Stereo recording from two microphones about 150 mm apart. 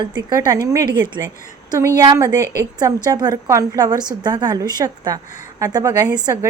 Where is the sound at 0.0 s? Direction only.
30° right (ahead or behind).